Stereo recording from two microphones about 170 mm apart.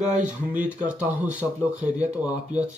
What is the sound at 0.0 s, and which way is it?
Speech, 45° right (ahead or behind).